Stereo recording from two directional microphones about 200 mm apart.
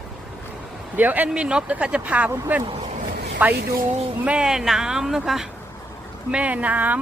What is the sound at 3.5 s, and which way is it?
Speech, 50° right (ahead or behind).